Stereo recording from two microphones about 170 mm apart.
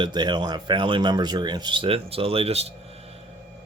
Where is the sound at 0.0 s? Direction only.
25° right (ahead or behind).